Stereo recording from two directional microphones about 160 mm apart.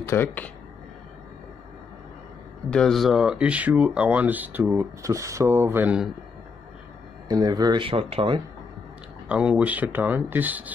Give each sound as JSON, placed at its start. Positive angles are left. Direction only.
{"t": 0.0, "sound": "speech", "side_deg": 15}
{"t": 2.7, "sound": "speech", "side_deg": 5}
{"t": 7.2, "sound": "speech", "side_deg": -25}
{"t": 9.3, "sound": "speech", "side_deg": -10}